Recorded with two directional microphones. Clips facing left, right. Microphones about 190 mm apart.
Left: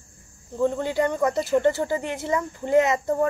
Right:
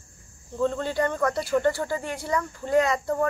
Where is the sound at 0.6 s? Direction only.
15° left (ahead or behind).